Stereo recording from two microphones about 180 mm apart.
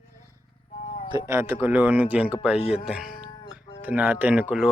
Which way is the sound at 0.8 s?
40° left (ahead or behind).